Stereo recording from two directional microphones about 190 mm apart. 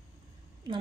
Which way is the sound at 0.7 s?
20° right (ahead or behind).